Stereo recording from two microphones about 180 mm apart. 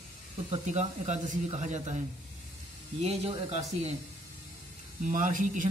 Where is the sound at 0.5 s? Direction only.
40° right (ahead or behind).